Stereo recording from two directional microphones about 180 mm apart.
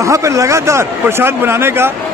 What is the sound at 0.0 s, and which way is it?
A man's voice, 15° right (ahead or behind).